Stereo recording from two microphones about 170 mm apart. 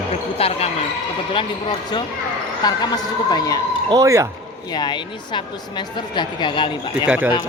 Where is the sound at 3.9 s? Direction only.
20° right (ahead or behind).